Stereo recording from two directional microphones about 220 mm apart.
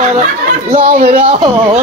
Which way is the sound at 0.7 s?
40° right (ahead or behind).